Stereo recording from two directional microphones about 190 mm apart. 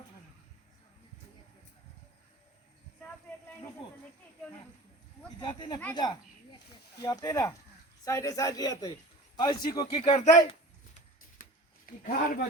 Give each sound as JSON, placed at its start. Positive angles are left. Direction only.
{"t": 5.4, "sound": "a man's voice", "side_deg": 25}
{"t": 5.9, "sound": "a sound", "side_deg": 25}
{"t": 7.0, "sound": "a man's voice", "side_deg": 20}
{"t": 12.0, "sound": "speech", "side_deg": 50}